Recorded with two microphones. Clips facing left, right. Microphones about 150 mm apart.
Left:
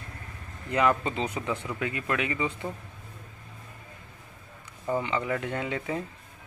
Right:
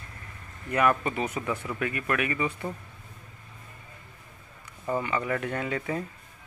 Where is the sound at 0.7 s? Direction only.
20° left (ahead or behind).